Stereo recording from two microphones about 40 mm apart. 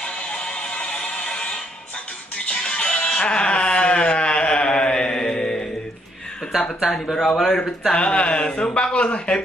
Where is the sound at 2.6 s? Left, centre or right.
Left.